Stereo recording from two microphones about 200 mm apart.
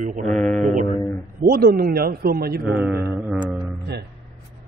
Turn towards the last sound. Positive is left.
turn(degrees=-5)  # may be behind; listen again after turning